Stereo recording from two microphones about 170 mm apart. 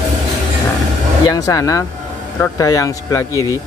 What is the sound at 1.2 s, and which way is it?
Speech, 20° left (ahead or behind).